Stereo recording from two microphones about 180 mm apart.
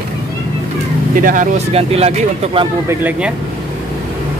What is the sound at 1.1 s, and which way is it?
Speech, 50° right (ahead or behind).